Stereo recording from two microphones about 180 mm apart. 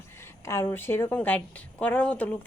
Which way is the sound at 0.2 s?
15° left (ahead or behind).